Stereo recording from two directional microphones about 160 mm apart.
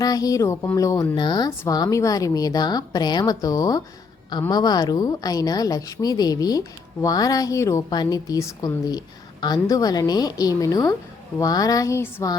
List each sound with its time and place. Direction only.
0.0 s a woman's voice: 25° left (ahead or behind)